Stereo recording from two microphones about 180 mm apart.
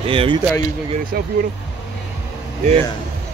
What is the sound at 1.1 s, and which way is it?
Speech, 55° right (ahead or behind).